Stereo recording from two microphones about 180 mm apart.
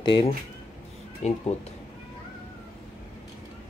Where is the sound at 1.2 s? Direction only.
35° left (ahead or behind).